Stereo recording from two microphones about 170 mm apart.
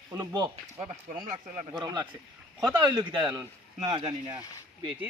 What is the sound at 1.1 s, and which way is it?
Speech, 50° right (ahead or behind).